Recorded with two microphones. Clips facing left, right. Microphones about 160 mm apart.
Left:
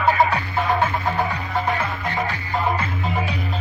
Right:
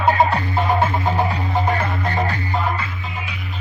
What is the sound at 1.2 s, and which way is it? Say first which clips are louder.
Music: right 3 dB; 25° right (ahead or behind).